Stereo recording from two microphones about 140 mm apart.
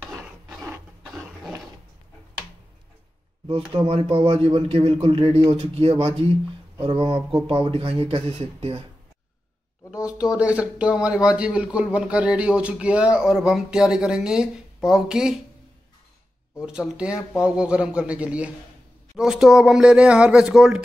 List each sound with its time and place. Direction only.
0.0 s filing: 5° right (ahead or behind)
3.7 s speech: 40° right (ahead or behind)
10.0 s speech: 5° right (ahead or behind)
16.5 s speech: 5° right (ahead or behind)